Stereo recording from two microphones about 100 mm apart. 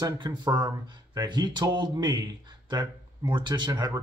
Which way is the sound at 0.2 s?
50° right (ahead or behind).